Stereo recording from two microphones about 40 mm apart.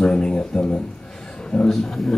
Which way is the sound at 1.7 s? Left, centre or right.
Centre.